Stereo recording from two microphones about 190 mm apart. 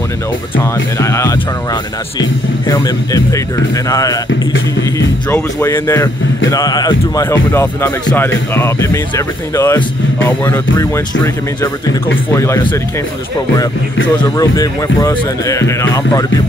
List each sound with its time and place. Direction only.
0.9 s speech: 15° left (ahead or behind)
5.3 s speech: 15° left (ahead or behind)
12.3 s speech: 15° left (ahead or behind)
14.3 s speech: 15° left (ahead or behind)